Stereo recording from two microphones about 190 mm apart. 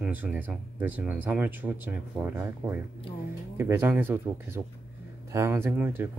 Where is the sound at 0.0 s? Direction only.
10° right (ahead or behind).